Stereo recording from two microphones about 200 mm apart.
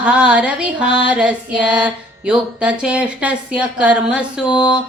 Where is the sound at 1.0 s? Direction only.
5° right (ahead or behind).